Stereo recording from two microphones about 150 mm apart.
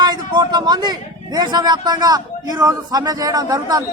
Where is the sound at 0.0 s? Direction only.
30° right (ahead or behind).